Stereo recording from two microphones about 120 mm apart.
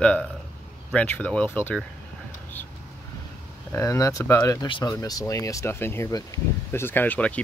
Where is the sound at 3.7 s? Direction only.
25° left (ahead or behind).